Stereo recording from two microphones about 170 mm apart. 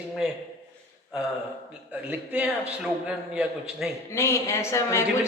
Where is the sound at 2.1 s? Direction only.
10° right (ahead or behind).